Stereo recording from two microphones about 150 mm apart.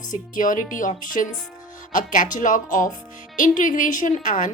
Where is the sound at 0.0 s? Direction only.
60° left (ahead or behind).